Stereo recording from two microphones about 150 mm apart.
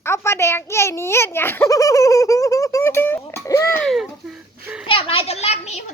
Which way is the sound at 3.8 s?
Centre (ahead or behind).